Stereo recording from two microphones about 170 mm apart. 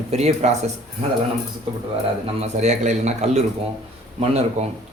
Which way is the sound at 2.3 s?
40° right (ahead or behind).